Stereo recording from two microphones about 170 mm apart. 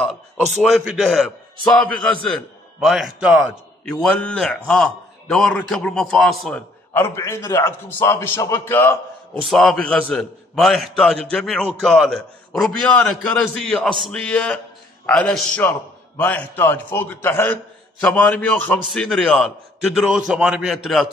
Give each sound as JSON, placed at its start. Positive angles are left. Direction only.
{"t": 0.0, "sound": "a man's voice", "side_deg": 0}
{"t": 4.0, "sound": "a man's voice", "side_deg": 5}
{"t": 6.9, "sound": "a man's voice", "side_deg": 15}
{"t": 9.4, "sound": "a man's voice", "side_deg": 0}